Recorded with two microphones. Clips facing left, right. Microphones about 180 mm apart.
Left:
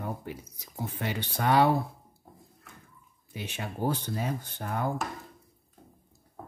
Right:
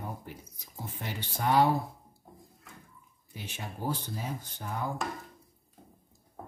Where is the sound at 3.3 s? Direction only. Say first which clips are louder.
Left 5 dB; 70° left (ahead or behind).